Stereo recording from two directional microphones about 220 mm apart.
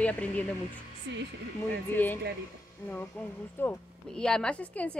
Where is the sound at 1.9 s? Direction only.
10° left (ahead or behind).